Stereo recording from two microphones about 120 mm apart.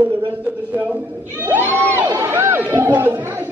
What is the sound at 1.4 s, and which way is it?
Crowd, 15° right (ahead or behind).